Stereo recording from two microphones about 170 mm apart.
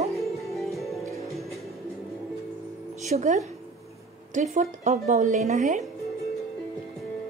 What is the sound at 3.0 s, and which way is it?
Speech, 45° right (ahead or behind).